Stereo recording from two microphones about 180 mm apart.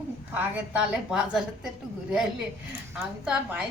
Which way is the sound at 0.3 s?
10° right (ahead or behind).